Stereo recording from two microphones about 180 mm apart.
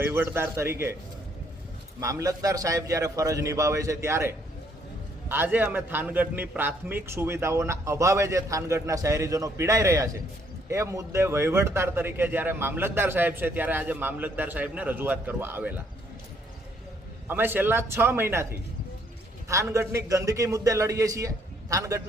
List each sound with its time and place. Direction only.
0.0 s speech: 15° right (ahead or behind)
2.0 s speech: 15° right (ahead or behind)
17.2 s speech: 10° right (ahead or behind)
19.5 s speech: 15° right (ahead or behind)